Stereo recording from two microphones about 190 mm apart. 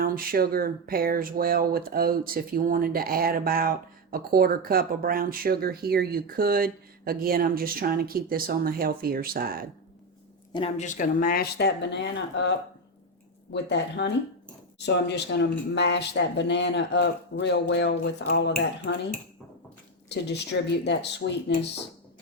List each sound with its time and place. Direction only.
0.0 s speech: 50° right (ahead or behind)
10.5 s speech: 35° left (ahead or behind); by 18.9 s 65° left (ahead or behind)
20.1 s speech: 65° left (ahead or behind)